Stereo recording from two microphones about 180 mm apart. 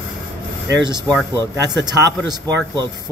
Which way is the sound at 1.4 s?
20° right (ahead or behind).